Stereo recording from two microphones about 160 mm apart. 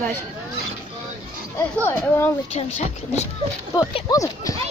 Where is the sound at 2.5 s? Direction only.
40° left (ahead or behind).